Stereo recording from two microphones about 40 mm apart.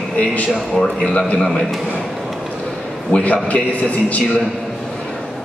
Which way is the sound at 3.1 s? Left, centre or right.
Left.